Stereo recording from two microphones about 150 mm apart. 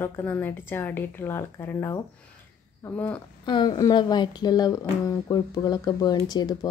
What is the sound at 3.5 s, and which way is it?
Speech, 30° left (ahead or behind).